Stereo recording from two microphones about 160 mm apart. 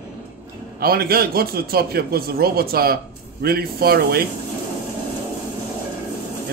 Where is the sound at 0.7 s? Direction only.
70° right (ahead or behind).